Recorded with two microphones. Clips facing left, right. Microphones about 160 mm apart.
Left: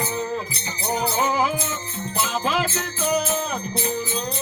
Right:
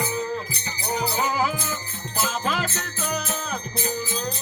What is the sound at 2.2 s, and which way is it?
Music, centre (ahead or behind).